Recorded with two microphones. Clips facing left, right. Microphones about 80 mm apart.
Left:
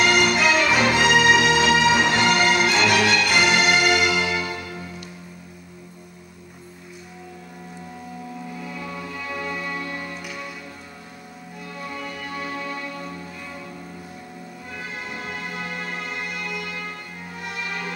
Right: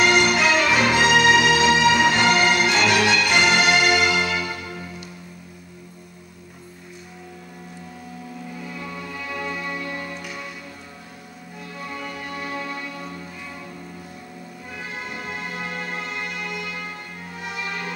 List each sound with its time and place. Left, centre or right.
0.0 s music: centre
3.7 s music: centre
8.6 s music: centre
11.9 s music: centre
14.8 s music: centre